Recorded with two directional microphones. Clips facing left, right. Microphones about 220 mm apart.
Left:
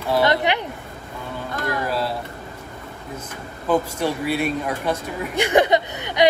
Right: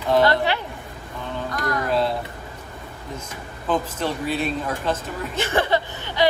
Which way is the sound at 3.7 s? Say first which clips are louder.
Left 3 dB; 10° left (ahead or behind).